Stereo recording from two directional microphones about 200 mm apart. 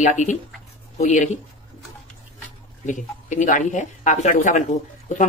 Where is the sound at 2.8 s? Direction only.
40° left (ahead or behind).